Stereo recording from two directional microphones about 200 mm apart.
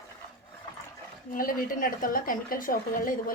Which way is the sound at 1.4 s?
45° left (ahead or behind).